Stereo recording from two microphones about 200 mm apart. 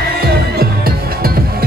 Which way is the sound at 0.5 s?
50° right (ahead or behind).